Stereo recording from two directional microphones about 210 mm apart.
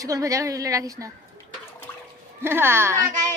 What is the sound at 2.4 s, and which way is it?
Speech, 10° right (ahead or behind).